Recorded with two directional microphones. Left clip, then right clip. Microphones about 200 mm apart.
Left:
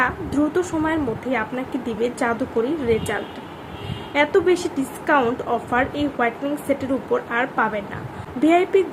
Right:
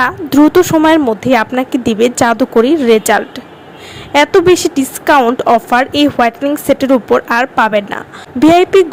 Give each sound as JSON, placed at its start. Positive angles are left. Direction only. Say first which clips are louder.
{"t": 0.0, "sound": "a woman's voice", "louder": "right 11 dB", "side_deg": -45}